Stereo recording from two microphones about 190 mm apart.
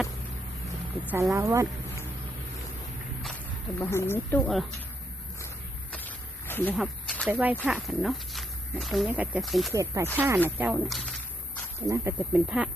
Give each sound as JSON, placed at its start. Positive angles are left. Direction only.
{"t": 1.0, "sound": "speech", "side_deg": -15}
{"t": 3.8, "sound": "speech", "side_deg": 15}
{"t": 5.9, "sound": "a sound", "side_deg": 10}
{"t": 6.7, "sound": "snake", "side_deg": 0}
{"t": 7.3, "sound": "speech", "side_deg": -10}
{"t": 9.7, "sound": "speech", "side_deg": -15}